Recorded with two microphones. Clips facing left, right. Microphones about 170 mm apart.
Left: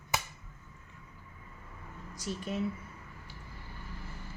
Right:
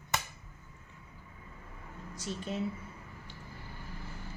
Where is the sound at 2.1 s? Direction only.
25° right (ahead or behind).